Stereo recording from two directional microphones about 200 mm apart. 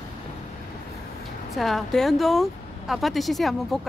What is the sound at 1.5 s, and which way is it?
Speech, centre (ahead or behind).